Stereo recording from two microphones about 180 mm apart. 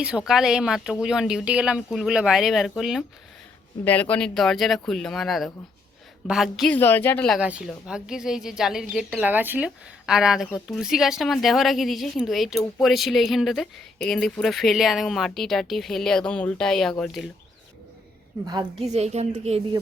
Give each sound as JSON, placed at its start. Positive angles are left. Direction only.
{"t": 0.0, "sound": "a woman's voice", "side_deg": -5}
{"t": 3.8, "sound": "a woman's voice", "side_deg": 10}
{"t": 6.7, "sound": "speech", "side_deg": 10}
{"t": 7.3, "sound": "a woman's voice", "side_deg": -5}
{"t": 18.8, "sound": "a woman's voice", "side_deg": -35}